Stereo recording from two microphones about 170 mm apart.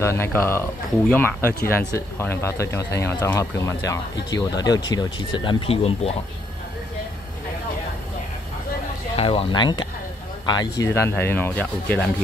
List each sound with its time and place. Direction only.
0.0 s speech: 15° left (ahead or behind); by 6.1 s 35° left (ahead or behind)
9.1 s speech: 35° left (ahead or behind); by 12.1 s 10° left (ahead or behind)